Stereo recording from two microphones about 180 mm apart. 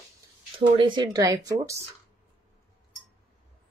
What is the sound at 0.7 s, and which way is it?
Speech, 25° right (ahead or behind).